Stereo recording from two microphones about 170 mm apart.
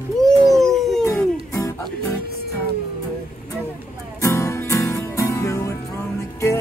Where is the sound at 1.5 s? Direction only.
20° left (ahead or behind).